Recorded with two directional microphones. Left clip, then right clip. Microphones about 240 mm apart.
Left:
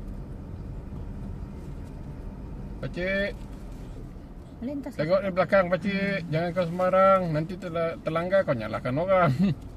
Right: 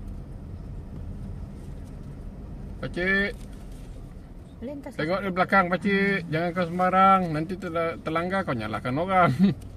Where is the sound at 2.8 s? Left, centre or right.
Centre.